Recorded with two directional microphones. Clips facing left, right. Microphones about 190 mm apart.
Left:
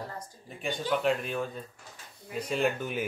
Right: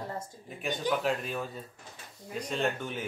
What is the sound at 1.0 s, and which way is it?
A woman's voice, centre (ahead or behind).